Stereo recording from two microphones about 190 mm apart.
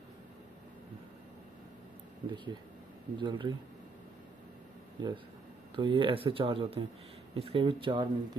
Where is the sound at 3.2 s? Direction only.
25° right (ahead or behind).